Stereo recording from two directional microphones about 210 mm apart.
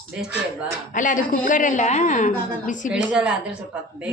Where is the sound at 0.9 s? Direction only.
40° left (ahead or behind).